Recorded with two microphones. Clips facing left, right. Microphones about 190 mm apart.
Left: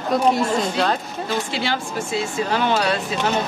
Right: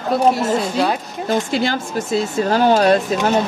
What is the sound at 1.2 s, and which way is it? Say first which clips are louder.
Speech: right 6 dB; 45° right (ahead or behind).